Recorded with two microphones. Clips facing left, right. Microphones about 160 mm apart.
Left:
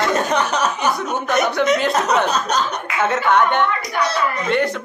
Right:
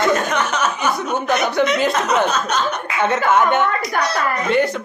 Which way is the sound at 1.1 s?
Centre (ahead or behind).